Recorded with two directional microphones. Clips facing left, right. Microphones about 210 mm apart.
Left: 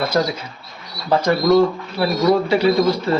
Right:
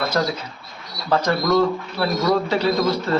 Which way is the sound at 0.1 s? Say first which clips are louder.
Left 3 dB; 15° left (ahead or behind).